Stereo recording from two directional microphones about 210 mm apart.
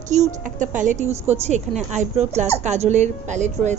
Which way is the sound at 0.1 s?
35° right (ahead or behind).